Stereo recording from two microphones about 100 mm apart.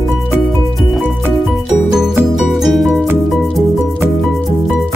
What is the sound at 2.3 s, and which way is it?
Music, centre (ahead or behind).